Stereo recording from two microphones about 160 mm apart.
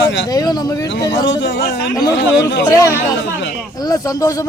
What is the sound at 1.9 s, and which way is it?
A man's voice, 20° left (ahead or behind).